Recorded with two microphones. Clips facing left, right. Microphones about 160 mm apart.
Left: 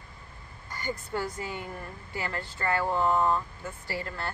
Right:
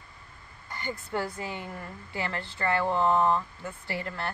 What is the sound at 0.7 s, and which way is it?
A woman's voice, 25° right (ahead or behind).